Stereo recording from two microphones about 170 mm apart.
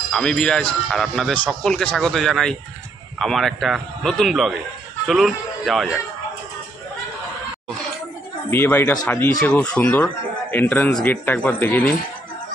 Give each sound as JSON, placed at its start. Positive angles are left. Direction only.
{"t": 0.1, "sound": "a man's voice", "side_deg": 5}
{"t": 8.5, "sound": "a man's voice", "side_deg": 10}